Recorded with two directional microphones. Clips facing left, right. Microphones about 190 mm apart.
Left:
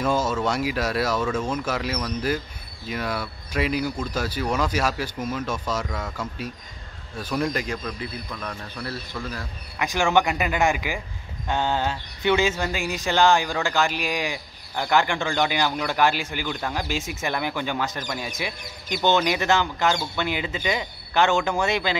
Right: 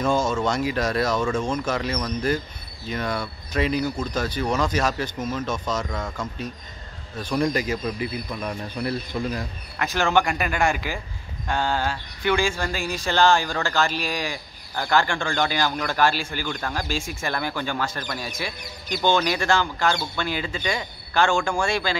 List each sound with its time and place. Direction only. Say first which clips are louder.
0.0 s speech: right 1 dB; 5° left (ahead or behind); by 9.5 s 20° right (ahead or behind)
9.8 s speech: even; 15° left (ahead or behind)